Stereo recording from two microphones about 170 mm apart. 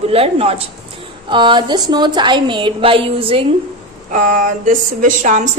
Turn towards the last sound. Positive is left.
turn(degrees=-45)  # may be behind; listen again after turning